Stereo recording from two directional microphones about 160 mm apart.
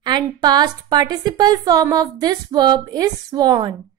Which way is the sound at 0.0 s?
25° right (ahead or behind).